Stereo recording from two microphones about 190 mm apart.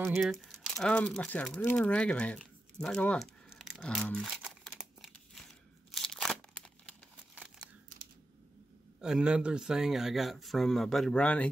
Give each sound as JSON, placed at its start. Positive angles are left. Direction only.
{"t": 0.2, "sound": "crumpling", "side_deg": 0}
{"t": 9.0, "sound": "speech", "side_deg": -5}